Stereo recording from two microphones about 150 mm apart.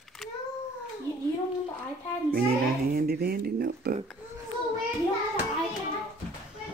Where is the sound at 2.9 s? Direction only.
90° right.